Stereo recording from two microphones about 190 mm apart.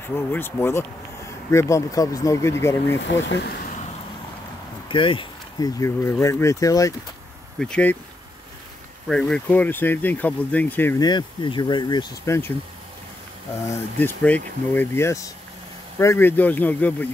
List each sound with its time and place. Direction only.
0.1 s speech: 10° left (ahead or behind)
3.3 s speech: 60° left (ahead or behind)
4.8 s speech: 25° left (ahead or behind)
7.5 s speech: 5° left (ahead or behind)
9.0 s speech: 5° left (ahead or behind)
11.1 s speech: 25° left (ahead or behind)
13.9 s speech: 10° left (ahead or behind)